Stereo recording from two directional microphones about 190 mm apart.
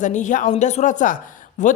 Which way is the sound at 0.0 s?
40° left (ahead or behind).